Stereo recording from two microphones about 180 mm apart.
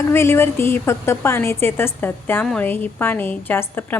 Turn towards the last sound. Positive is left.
turn(degrees=10)  # may be behind; listen again after turning